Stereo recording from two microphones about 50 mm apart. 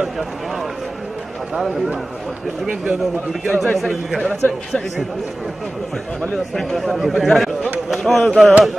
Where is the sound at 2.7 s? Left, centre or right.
Centre.